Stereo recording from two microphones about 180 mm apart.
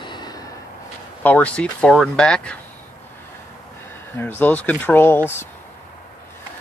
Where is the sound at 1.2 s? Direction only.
10° left (ahead or behind).